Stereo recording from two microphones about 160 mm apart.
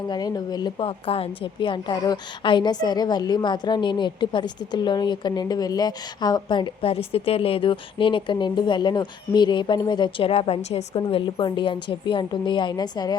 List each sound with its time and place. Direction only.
0.1 s a woman's voice: 25° left (ahead or behind)